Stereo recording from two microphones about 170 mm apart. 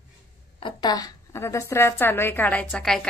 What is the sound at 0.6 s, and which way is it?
A woman's voice, 25° left (ahead or behind).